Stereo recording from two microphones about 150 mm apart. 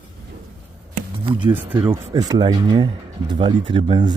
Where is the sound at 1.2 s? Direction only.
35° right (ahead or behind).